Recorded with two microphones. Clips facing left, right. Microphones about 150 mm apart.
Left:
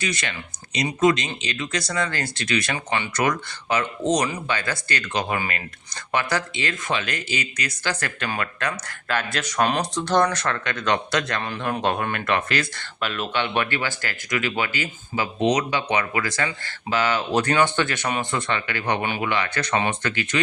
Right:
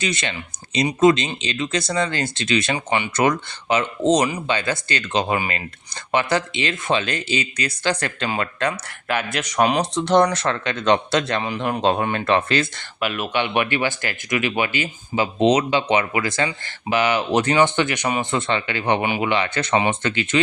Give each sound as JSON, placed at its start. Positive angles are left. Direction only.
{"t": 0.0, "sound": "speech", "side_deg": -25}
{"t": 11.3, "sound": "speech", "side_deg": -15}
{"t": 13.0, "sound": "speech", "side_deg": -10}